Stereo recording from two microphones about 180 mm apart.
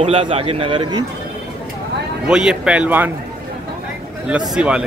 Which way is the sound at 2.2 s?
5° right (ahead or behind).